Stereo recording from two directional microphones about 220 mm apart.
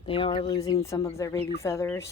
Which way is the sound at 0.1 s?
25° left (ahead or behind).